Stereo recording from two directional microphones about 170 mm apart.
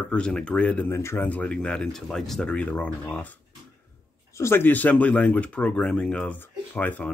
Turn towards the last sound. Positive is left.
turn(degrees=10)  # may be behind; listen again after turning